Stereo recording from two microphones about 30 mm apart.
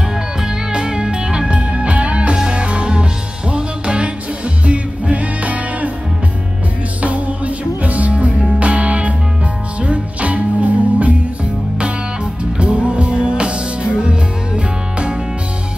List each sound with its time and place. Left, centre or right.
0.4 s music: right
1.5 s music: right
2.3 s music: right
2.6 s music: right
4.6 s music: right
7.0 s music: right
12.5 s music: right